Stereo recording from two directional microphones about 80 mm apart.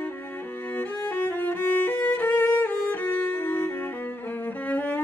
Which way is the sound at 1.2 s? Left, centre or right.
Left.